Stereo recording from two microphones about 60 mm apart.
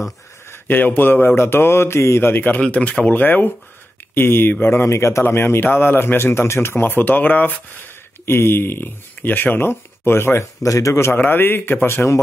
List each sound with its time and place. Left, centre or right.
0.5 s speech: left
2.6 s speech: left
10.6 s a man's voice: left
11.1 s speech: left